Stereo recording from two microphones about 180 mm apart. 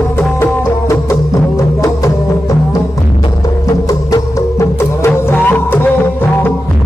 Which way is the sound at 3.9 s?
15° left (ahead or behind).